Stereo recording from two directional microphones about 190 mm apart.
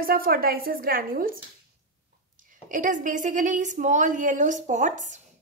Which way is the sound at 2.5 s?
45° right (ahead or behind).